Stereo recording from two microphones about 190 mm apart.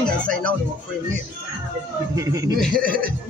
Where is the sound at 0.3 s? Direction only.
5° left (ahead or behind).